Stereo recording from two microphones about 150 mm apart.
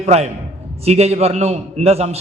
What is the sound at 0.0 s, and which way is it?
A man's voice, 45° right (ahead or behind).